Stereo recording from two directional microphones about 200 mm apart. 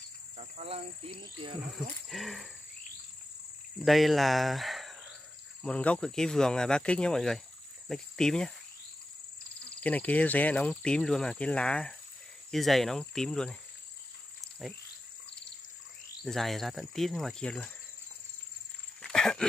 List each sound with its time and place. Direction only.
0.4 s speech: 30° right (ahead or behind)
1.8 s speech: centre (ahead or behind)
3.8 s speech: centre (ahead or behind)
9.8 s speech: 5° left (ahead or behind)
14.6 s speech: centre (ahead or behind)
16.3 s speech: centre (ahead or behind)
18.9 s a sound: 5° left (ahead or behind)